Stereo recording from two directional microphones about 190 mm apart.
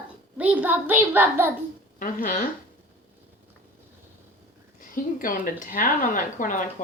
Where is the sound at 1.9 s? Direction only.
45° left (ahead or behind).